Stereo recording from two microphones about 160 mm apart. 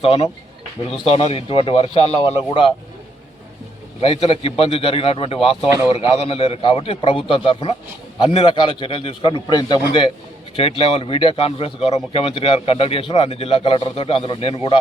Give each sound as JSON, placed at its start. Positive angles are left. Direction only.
{"t": 0.0, "sound": "speech", "side_deg": 35}
{"t": 4.0, "sound": "speech", "side_deg": 35}
{"t": 10.5, "sound": "speech", "side_deg": 35}